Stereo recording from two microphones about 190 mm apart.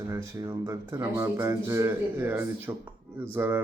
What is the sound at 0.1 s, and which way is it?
A man's voice, 15° right (ahead or behind).